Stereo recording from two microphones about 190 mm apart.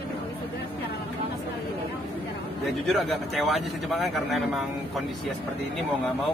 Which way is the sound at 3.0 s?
Centre (ahead or behind).